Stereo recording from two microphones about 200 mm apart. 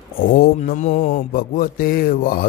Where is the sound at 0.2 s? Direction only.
45° left (ahead or behind).